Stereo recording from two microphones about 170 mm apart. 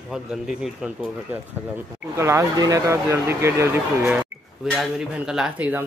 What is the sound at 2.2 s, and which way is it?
Speech, 15° right (ahead or behind).